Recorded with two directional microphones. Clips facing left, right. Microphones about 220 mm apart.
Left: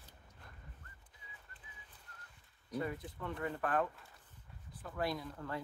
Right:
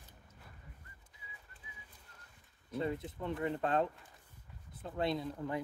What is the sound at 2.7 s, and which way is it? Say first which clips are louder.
Speech: right 3 dB; 25° right (ahead or behind).